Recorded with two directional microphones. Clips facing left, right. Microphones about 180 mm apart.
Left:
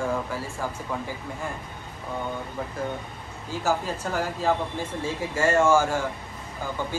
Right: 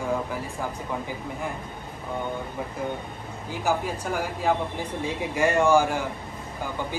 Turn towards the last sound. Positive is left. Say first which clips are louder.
# even
turn(degrees=-15)  # may be behind; listen again after turning